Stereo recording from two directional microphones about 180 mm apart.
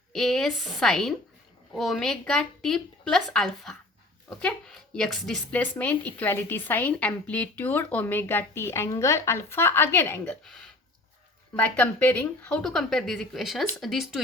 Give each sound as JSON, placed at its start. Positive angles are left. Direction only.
{"t": 0.1, "sound": "speech", "side_deg": 0}